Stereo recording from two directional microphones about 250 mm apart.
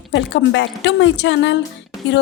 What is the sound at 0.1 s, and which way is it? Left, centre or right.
A woman's voice, left.